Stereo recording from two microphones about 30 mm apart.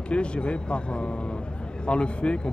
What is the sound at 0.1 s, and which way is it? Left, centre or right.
Speech, left.